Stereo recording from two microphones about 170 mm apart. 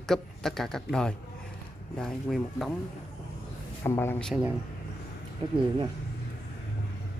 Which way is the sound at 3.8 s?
15° left (ahead or behind).